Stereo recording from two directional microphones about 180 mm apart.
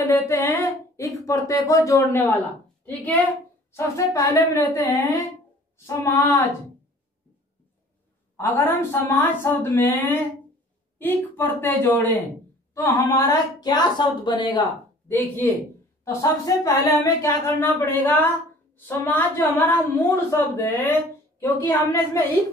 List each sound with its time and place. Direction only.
0.3 s a woman's voice: 15° left (ahead or behind)
6.1 s a woman's voice: 15° left (ahead or behind)
8.4 s a woman's voice: 10° left (ahead or behind)
15.1 s a woman's voice: 10° left (ahead or behind)